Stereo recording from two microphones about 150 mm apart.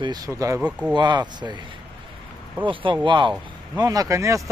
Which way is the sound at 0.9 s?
30° right (ahead or behind).